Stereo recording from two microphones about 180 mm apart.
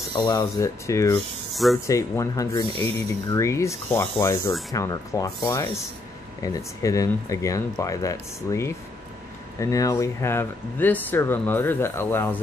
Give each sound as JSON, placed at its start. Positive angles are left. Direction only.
{"t": 0.1, "sound": "speech", "side_deg": 25}
{"t": 1.5, "sound": "speech", "side_deg": 0}
{"t": 1.9, "sound": "speech", "side_deg": 15}